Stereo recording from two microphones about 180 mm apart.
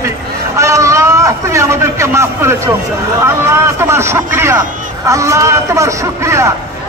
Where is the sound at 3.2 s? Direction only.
15° right (ahead or behind).